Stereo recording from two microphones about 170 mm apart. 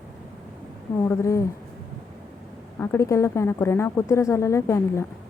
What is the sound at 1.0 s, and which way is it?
Speech, 15° left (ahead or behind).